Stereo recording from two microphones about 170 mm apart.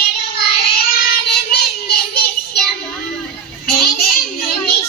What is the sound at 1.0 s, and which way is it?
Child singing, 65° left (ahead or behind).